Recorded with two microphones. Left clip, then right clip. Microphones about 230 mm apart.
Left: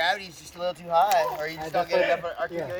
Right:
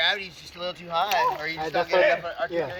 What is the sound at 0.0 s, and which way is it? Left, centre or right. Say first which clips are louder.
Speech: right 1 dB; left.